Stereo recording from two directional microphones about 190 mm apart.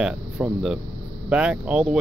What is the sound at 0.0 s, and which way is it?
Speech, 5° right (ahead or behind).